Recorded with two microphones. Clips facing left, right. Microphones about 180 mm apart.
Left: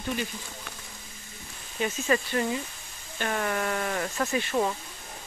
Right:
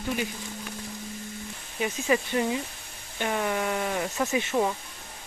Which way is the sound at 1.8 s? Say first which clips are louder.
Right 1 dB; 10° right (ahead or behind).